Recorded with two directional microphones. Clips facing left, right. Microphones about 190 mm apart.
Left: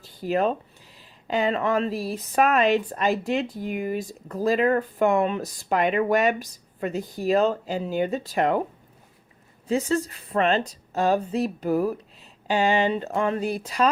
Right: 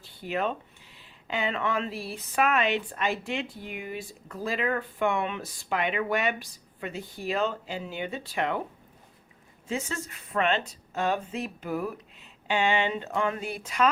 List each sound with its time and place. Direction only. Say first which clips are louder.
0.0 s a sound: left 6 dB; 40° left (ahead or behind)
0.9 s speech: left 7 dB; 40° left (ahead or behind)
9.6 s speech: left 9 dB; 35° left (ahead or behind)